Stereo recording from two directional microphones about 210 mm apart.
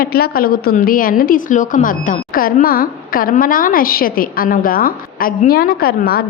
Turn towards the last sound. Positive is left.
turn(degrees=45)  # may be behind; listen again after turning